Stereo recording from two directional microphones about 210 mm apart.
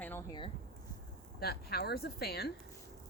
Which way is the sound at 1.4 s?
50° left (ahead or behind).